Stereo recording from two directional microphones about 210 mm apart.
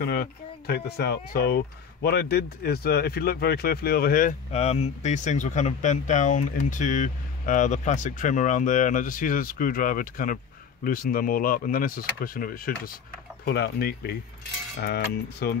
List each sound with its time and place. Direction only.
0.0 s speech: 50° left (ahead or behind)
15.4 s speech: 50° left (ahead or behind)